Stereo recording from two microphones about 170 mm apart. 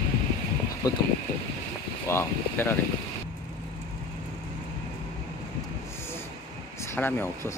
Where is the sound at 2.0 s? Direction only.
15° left (ahead or behind).